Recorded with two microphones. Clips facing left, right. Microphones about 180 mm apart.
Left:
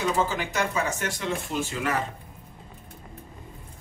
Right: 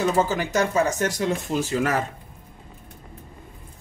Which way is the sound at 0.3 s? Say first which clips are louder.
Right 5 dB; 40° right (ahead or behind).